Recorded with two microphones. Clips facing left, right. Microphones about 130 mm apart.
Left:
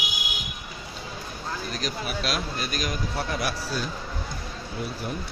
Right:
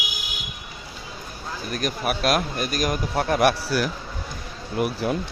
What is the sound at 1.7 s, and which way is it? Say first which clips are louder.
A man's voice: right 9 dB; 55° right (ahead or behind).